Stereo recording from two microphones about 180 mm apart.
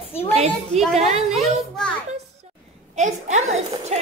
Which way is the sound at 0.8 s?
Centre (ahead or behind).